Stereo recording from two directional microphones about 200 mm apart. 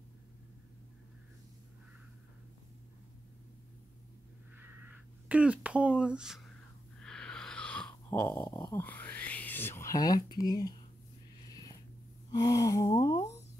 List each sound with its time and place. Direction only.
5.3 s speech: 5° right (ahead or behind)
7.0 s a sound: 5° left (ahead or behind)
8.5 s speech: 15° left (ahead or behind)
12.3 s speech: 20° left (ahead or behind)